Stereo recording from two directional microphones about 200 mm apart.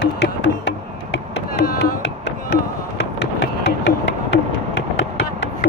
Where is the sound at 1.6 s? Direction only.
55° left (ahead or behind).